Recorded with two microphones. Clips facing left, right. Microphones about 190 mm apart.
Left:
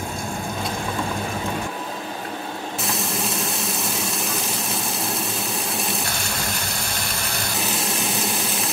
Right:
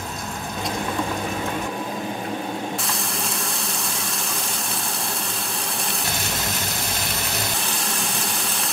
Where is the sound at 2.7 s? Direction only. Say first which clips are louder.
Left 2 dB; centre (ahead or behind).